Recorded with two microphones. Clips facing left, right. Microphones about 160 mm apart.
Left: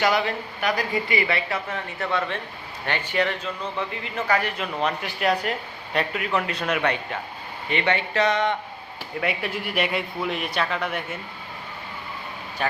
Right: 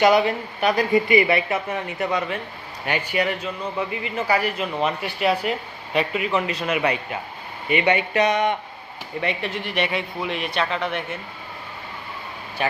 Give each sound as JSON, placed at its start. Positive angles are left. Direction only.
{"t": 0.0, "sound": "a man's voice", "side_deg": -20}
{"t": 9.2, "sound": "a man's voice", "side_deg": 5}